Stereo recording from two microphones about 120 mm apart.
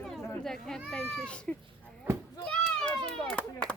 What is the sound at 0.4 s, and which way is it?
Speech, 5° left (ahead or behind).